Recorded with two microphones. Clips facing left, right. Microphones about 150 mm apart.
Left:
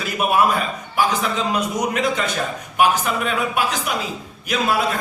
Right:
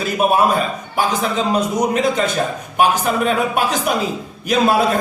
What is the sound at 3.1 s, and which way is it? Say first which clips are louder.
Speech: right 5 dB; 40° right (ahead or behind).